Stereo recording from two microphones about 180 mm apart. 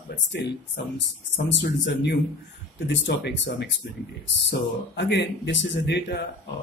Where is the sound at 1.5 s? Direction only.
90° left.